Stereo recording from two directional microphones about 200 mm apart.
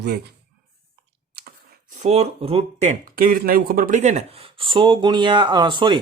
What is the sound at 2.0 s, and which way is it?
Speech, 35° right (ahead or behind).